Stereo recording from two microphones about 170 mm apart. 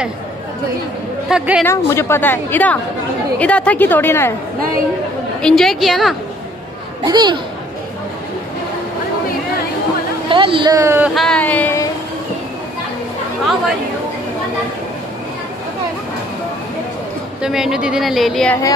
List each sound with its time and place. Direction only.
1.3 s a woman's voice: 10° right (ahead or behind)
1.7 s a woman's voice: 15° left (ahead or behind)
5.4 s a woman's voice: centre (ahead or behind)
7.0 s speech: 25° right (ahead or behind)
10.3 s speech: 30° right (ahead or behind)
11.1 s speech: 5° left (ahead or behind)
17.4 s a woman's voice: 5° right (ahead or behind)